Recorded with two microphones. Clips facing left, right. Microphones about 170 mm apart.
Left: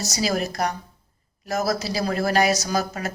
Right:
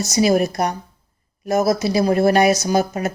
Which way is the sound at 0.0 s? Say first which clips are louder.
Right 8 dB; 20° right (ahead or behind).